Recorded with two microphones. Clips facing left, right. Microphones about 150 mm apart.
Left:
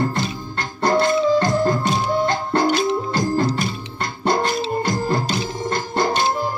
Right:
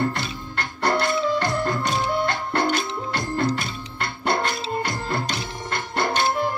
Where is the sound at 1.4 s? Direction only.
40° left (ahead or behind).